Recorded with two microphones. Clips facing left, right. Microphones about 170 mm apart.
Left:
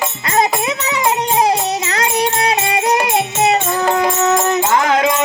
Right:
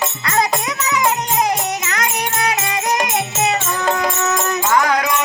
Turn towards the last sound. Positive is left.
turn(degrees=25)  # may be behind; listen again after turning